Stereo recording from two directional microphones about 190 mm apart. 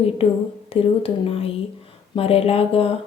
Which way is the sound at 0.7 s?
30° left (ahead or behind).